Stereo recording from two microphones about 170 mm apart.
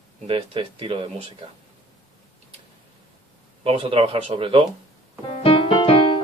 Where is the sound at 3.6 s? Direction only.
30° right (ahead or behind).